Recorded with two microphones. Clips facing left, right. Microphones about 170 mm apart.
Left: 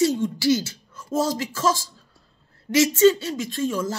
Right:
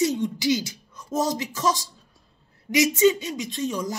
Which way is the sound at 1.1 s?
20° right (ahead or behind).